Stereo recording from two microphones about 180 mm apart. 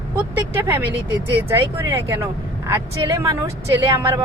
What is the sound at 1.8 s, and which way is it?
Speech, 15° right (ahead or behind).